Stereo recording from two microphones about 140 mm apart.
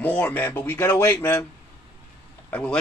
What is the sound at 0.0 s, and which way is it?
Speech, 15° left (ahead or behind).